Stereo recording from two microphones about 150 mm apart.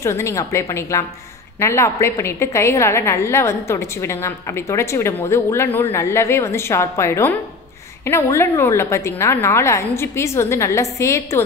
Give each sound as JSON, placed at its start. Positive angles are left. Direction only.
{"t": 0.0, "sound": "a woman's voice", "side_deg": 20}